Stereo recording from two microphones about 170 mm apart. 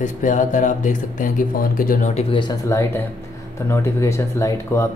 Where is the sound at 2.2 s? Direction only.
30° left (ahead or behind).